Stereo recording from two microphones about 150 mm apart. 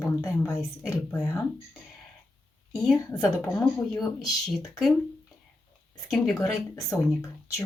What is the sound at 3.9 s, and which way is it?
Speech, centre (ahead or behind).